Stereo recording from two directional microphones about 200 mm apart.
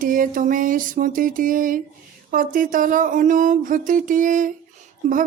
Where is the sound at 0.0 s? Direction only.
40° right (ahead or behind).